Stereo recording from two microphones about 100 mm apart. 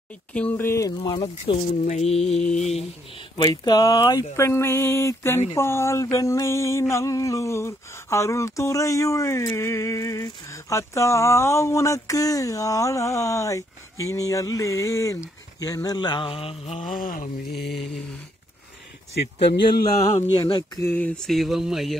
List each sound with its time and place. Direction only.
0.3 s music: 15° left (ahead or behind)
0.9 s mantra: 55° left (ahead or behind)
1.4 s speech: 90° left
2.1 s mantra: 5° left (ahead or behind)
3.3 s a sound: 45° left (ahead or behind)
4.4 s music: 25° left (ahead or behind)
5.6 s a sound: 25° left (ahead or behind)
15.6 s mantra: 35° left (ahead or behind); by 16.8 s 75° left (ahead or behind)
19.7 s a sound: 40° left (ahead or behind)
20.4 s mantra: 45° left (ahead or behind)
20.9 s mantra: 10° left (ahead or behind)